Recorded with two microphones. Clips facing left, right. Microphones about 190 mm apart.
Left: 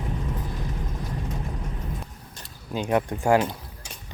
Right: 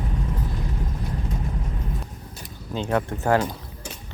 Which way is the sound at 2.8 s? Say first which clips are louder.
Left 1 dB; 15° left (ahead or behind).